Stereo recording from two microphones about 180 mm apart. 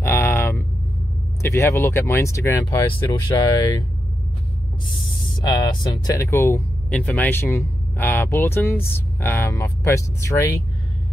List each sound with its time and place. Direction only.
0.0 s a sound: 15° left (ahead or behind)
1.4 s speech: 15° left (ahead or behind)
4.8 s speech: 25° left (ahead or behind)